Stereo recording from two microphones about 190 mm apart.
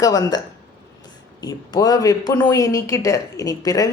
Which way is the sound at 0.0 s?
20° left (ahead or behind).